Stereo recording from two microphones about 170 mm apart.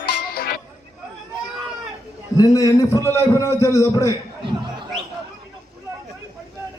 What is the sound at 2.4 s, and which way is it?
A man's voice, 20° left (ahead or behind).